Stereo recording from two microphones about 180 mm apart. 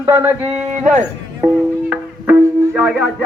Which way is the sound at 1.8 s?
5° right (ahead or behind).